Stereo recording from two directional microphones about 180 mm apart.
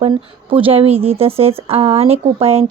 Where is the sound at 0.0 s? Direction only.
30° right (ahead or behind).